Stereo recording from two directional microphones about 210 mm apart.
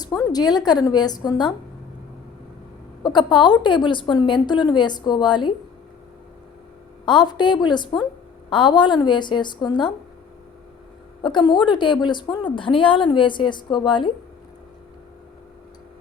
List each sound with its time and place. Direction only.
0.0 s a woman's voice: 20° left (ahead or behind)
3.0 s a woman's voice: 20° left (ahead or behind)
7.0 s a woman's voice: 20° left (ahead or behind)
11.2 s a woman's voice: 20° left (ahead or behind)